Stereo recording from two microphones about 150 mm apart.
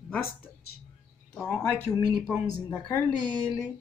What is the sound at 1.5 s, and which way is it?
Speech, 20° left (ahead or behind).